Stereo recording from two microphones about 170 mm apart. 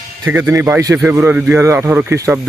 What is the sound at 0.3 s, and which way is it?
A man's voice, 15° right (ahead or behind).